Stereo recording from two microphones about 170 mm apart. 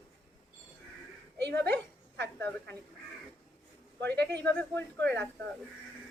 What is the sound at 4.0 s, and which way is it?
Speech, 85° right.